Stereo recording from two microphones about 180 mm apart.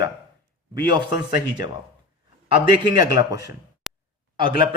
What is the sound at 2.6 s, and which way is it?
Speech, 25° right (ahead or behind).